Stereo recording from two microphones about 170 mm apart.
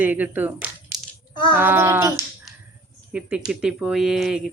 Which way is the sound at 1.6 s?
15° right (ahead or behind).